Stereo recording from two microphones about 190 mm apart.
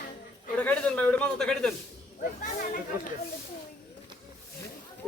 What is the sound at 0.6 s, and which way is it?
A man's voice, 10° left (ahead or behind).